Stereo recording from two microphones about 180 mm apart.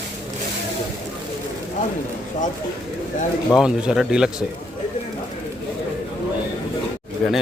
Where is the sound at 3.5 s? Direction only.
5° right (ahead or behind).